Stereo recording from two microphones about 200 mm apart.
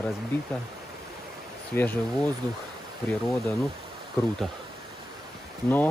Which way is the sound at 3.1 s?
Centre (ahead or behind).